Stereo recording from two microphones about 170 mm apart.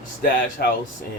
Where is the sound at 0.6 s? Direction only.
70° left (ahead or behind).